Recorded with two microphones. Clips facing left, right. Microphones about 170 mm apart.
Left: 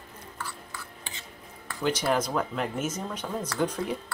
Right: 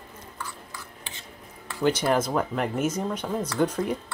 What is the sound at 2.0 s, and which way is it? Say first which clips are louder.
Speech: right 3 dB; 10° right (ahead or behind).